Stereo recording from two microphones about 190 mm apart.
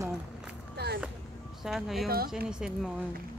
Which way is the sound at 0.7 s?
60° right (ahead or behind).